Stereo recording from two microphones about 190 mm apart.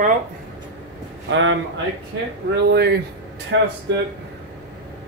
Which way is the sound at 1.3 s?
75° right (ahead or behind).